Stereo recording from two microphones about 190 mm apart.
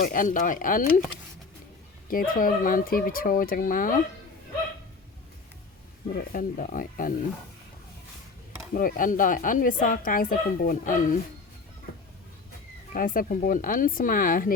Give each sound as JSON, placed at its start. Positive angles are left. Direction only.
{"t": 0.0, "sound": "speech", "side_deg": 45}
{"t": 2.0, "sound": "speech", "side_deg": 50}
{"t": 6.1, "sound": "speech", "side_deg": 45}
{"t": 8.7, "sound": "speech", "side_deg": 45}
{"t": 12.9, "sound": "speech", "side_deg": 45}